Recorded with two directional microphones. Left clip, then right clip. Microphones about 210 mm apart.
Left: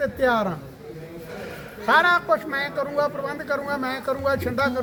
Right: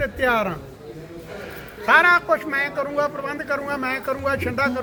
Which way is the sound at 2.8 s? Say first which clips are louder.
Right 1 dB; 5° left (ahead or behind).